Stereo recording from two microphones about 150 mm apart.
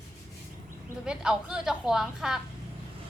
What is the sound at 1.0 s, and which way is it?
A woman's voice, 5° right (ahead or behind).